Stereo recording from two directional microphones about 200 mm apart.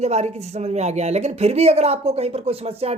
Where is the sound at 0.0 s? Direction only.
35° right (ahead or behind).